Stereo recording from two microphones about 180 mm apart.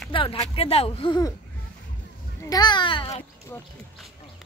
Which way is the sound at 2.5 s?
25° left (ahead or behind).